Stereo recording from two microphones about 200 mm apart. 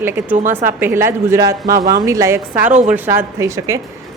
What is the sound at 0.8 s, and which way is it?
A woman's voice, 10° right (ahead or behind).